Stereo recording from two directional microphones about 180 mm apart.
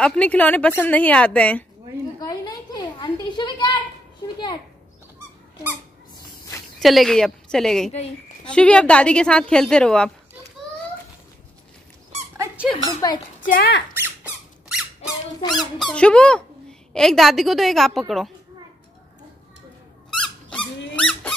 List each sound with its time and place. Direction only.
0.0 s speech: 5° left (ahead or behind)
2.1 s a sound: 20° left (ahead or behind)
6.8 s a woman's voice: centre (ahead or behind)
12.8 s a child's voice: 20° left (ahead or behind)
13.5 s speech: 60° left (ahead or behind)
14.0 s squeak: 5° right (ahead or behind)
15.4 s speech: 25° left (ahead or behind)
15.8 s a woman's voice: 5° left (ahead or behind)
20.9 s squeak: 5° left (ahead or behind)